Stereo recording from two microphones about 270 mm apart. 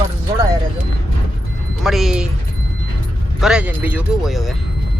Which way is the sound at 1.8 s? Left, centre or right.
Centre.